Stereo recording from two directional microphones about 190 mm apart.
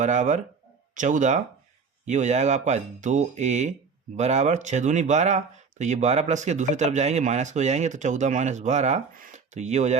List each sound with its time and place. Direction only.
0.0 s speech: 40° right (ahead or behind)